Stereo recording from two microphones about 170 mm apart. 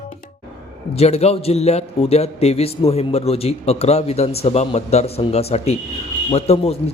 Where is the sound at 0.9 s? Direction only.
40° left (ahead or behind).